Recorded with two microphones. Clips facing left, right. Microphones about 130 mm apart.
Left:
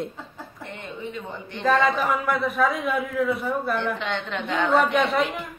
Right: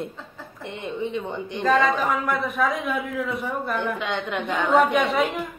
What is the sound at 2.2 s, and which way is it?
Speech, centre (ahead or behind).